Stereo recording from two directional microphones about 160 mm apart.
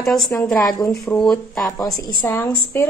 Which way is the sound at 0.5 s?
25° left (ahead or behind).